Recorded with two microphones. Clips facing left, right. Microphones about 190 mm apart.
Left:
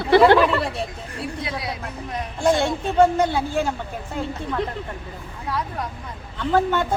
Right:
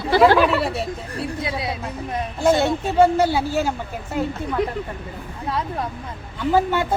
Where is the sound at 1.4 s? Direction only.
25° right (ahead or behind).